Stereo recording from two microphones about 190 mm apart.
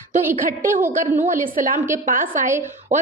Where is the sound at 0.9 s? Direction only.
40° right (ahead or behind).